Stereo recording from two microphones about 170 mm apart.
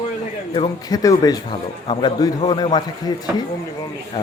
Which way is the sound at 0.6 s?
20° left (ahead or behind).